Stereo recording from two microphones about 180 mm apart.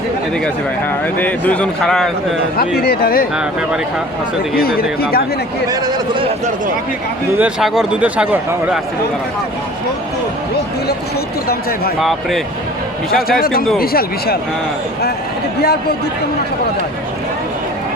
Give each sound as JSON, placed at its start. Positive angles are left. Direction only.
{"t": 1.2, "sound": "a man's voice", "side_deg": 10}
{"t": 2.6, "sound": "speech", "side_deg": 60}
{"t": 4.5, "sound": "speech", "side_deg": 55}
{"t": 7.3, "sound": "a man's voice", "side_deg": -5}
{"t": 11.9, "sound": "speech", "side_deg": 0}
{"t": 13.1, "sound": "speech", "side_deg": 55}